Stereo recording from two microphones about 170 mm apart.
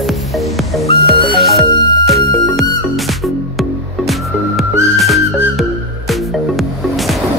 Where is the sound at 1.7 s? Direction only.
25° left (ahead or behind).